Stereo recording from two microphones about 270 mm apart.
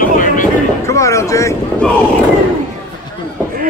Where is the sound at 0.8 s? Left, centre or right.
Centre.